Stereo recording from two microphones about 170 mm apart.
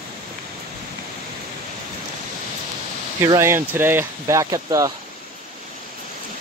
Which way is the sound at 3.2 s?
15° right (ahead or behind).